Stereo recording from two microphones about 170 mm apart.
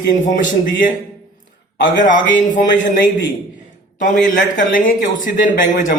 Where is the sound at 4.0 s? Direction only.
50° left (ahead or behind).